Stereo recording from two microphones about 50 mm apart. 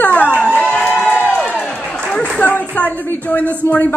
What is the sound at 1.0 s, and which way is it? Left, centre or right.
Crowd, left.